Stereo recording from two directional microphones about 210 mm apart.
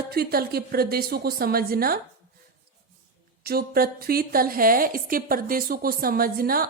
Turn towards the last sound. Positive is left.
turn(degrees=-45)  # may be behind; listen again after turning